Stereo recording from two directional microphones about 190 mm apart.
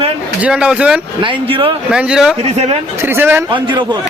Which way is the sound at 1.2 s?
25° right (ahead or behind).